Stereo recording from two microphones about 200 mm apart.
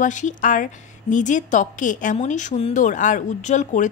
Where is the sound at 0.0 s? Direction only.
40° left (ahead or behind).